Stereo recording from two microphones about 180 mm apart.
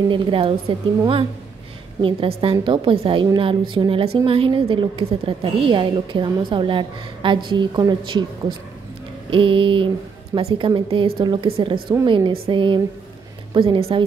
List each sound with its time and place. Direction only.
0.1 s a woman's voice: 30° right (ahead or behind)
9.3 s a woman's voice: 30° right (ahead or behind)